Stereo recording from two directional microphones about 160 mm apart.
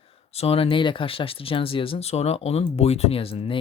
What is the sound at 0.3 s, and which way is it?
Speech, 40° left (ahead or behind).